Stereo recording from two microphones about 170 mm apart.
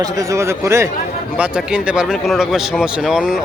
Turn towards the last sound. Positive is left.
turn(degrees=-5)  # may be behind; listen again after turning